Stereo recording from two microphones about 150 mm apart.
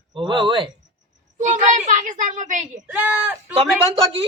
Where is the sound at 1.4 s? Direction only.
55° right (ahead or behind).